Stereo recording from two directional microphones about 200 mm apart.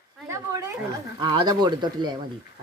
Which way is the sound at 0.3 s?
15° right (ahead or behind).